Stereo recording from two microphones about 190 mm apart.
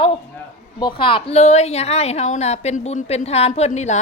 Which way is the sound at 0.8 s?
25° left (ahead or behind).